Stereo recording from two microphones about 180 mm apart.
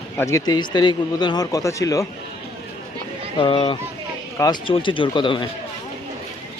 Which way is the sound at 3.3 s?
30° left (ahead or behind).